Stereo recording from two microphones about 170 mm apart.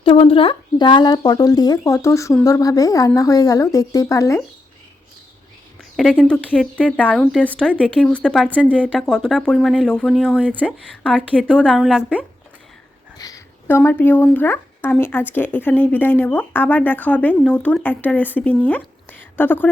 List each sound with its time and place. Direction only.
0.0 s speech: 30° left (ahead or behind)
6.0 s speech: 5° left (ahead or behind)
13.1 s speech: 20° left (ahead or behind)